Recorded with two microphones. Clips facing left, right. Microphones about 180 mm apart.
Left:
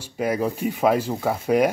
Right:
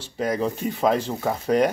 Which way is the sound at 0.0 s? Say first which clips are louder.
Left 1 dB; 10° left (ahead or behind).